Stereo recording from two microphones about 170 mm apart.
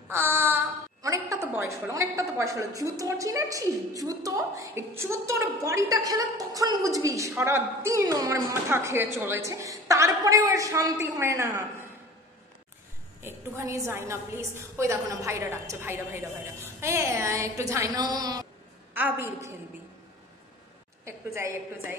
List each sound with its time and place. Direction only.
0.1 s a woman's voice: 15° right (ahead or behind)
13.2 s a woman's voice: 15° right (ahead or behind)
18.9 s a woman's voice: 10° right (ahead or behind)
21.0 s a woman's voice: 15° right (ahead or behind)